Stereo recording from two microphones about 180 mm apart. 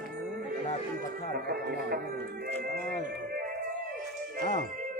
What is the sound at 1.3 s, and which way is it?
Speech, 60° right (ahead or behind).